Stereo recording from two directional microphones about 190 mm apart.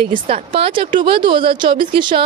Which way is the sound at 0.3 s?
30° right (ahead or behind).